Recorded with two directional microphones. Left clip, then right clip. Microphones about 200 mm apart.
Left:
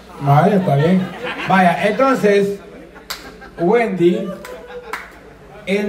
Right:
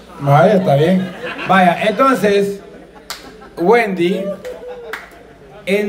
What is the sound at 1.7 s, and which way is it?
Speech, 20° right (ahead or behind).